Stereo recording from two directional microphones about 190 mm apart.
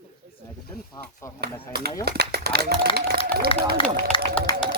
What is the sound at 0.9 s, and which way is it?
Speech, 15° left (ahead or behind).